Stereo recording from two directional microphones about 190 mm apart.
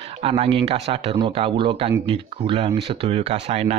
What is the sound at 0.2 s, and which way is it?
Speech, 30° right (ahead or behind).